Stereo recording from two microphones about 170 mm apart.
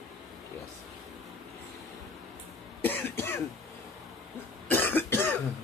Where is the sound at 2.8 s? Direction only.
10° left (ahead or behind).